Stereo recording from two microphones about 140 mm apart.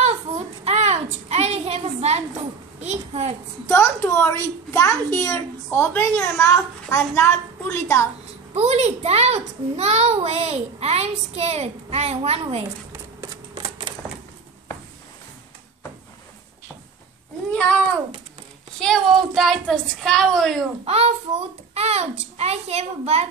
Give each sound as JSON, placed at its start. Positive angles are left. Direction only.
{"t": 0.7, "sound": "a sound", "side_deg": -50}
{"t": 2.8, "sound": "a child's voice", "side_deg": -50}
{"t": 3.6, "sound": "a woman's voice", "side_deg": 20}
{"t": 8.5, "sound": "a child's voice", "side_deg": -50}
{"t": 13.2, "sound": "a sound", "side_deg": -35}
{"t": 17.5, "sound": "cat", "side_deg": 5}
{"t": 18.8, "sound": "a woman's voice", "side_deg": 0}
{"t": 20.8, "sound": "a child's voice", "side_deg": -50}